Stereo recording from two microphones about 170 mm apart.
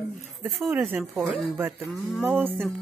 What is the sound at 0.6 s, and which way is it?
Speech, 5° right (ahead or behind).